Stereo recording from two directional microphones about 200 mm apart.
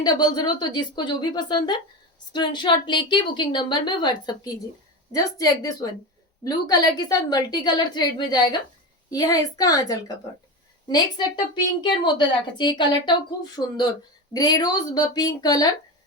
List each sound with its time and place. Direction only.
0.0 s a woman's voice: 20° left (ahead or behind)
11.5 s a woman's voice: 20° left (ahead or behind)